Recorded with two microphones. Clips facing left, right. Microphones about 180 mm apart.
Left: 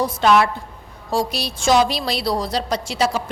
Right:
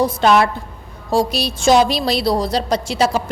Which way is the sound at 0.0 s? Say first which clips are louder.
Right 2 dB; 30° right (ahead or behind).